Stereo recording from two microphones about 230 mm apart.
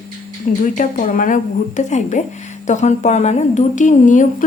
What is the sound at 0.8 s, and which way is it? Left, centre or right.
A woman's voice, left.